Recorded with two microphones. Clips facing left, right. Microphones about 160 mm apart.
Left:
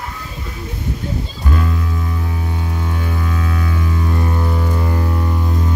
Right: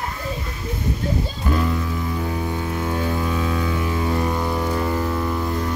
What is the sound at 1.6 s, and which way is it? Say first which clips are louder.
Music: even; 15° right (ahead or behind).